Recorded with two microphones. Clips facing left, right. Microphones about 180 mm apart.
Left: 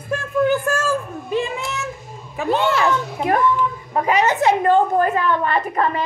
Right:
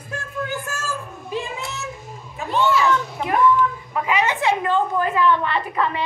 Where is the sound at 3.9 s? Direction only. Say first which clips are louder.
Left 8 dB; 40° left (ahead or behind).